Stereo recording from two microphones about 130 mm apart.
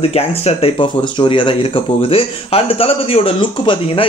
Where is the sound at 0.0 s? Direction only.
50° left (ahead or behind).